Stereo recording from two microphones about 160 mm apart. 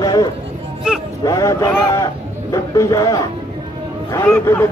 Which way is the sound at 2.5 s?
20° left (ahead or behind).